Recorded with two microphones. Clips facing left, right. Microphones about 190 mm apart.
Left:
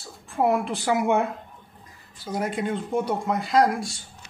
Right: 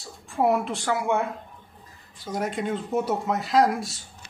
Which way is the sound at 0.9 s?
20° left (ahead or behind).